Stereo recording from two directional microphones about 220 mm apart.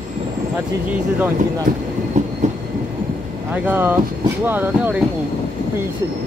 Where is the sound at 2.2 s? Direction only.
35° right (ahead or behind).